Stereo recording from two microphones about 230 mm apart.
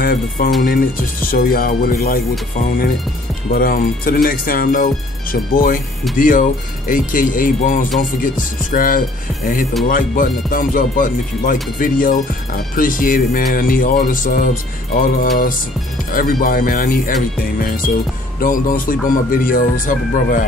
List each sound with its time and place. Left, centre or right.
0.0 s speech: left
3.5 s speech: left